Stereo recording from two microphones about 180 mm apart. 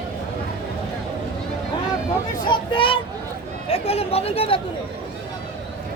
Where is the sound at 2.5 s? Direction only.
30° left (ahead or behind).